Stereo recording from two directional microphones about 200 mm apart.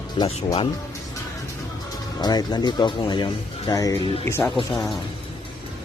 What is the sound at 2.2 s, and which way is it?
Speech, 20° left (ahead or behind).